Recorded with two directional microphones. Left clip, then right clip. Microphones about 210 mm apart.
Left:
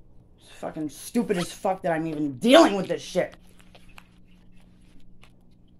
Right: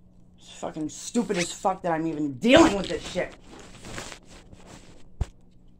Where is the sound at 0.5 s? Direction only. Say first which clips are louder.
Even; 5° right (ahead or behind); by 3.3 s 20° left (ahead or behind).